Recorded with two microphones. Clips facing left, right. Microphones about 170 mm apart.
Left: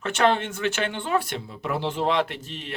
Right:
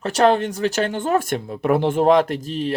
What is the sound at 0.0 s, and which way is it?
Speech, 35° right (ahead or behind).